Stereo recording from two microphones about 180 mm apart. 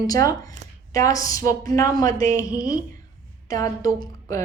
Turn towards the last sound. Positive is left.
turn(degrees=20)  # may be behind; listen again after turning